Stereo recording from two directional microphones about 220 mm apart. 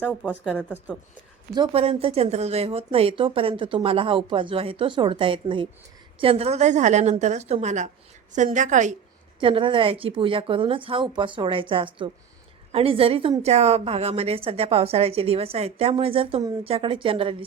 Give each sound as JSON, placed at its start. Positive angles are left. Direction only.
{"t": 0.0, "sound": "speech", "side_deg": 5}
{"t": 0.4, "sound": "speech", "side_deg": -5}
{"t": 1.5, "sound": "a woman's voice", "side_deg": -25}
{"t": 9.4, "sound": "a woman's voice", "side_deg": -25}